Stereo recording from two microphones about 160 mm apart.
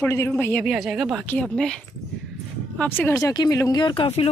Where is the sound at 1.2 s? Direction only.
10° left (ahead or behind).